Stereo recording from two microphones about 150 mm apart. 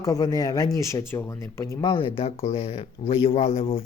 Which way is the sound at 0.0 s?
25° left (ahead or behind).